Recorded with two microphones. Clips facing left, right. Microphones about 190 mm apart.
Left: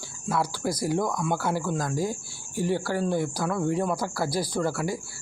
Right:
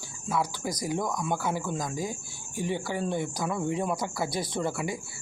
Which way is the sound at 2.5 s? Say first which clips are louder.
Left 4 dB; 15° right (ahead or behind).